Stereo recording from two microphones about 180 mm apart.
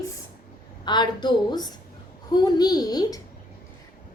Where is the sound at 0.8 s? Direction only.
25° left (ahead or behind).